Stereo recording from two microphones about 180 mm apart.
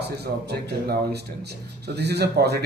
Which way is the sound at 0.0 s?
65° right (ahead or behind).